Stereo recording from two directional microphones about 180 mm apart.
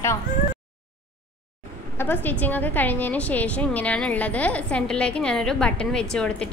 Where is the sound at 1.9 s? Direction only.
10° left (ahead or behind).